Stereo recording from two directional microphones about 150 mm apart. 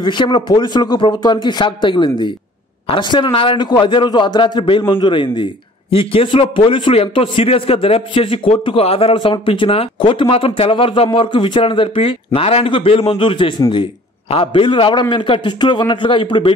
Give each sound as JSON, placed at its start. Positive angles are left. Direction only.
{"t": 0.0, "sound": "a man's voice", "side_deg": 30}